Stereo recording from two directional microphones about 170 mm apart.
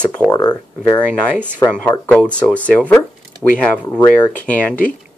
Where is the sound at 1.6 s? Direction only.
5° left (ahead or behind).